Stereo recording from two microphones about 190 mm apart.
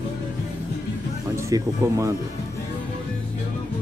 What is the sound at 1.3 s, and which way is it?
Speech, 15° right (ahead or behind).